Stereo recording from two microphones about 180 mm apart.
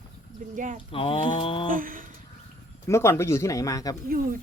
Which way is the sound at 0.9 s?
30° left (ahead or behind).